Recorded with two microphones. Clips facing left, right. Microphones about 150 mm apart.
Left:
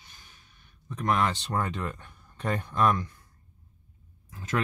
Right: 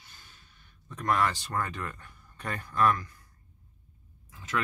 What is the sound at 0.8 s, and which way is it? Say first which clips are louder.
Speech: left 1 dB; 20° left (ahead or behind).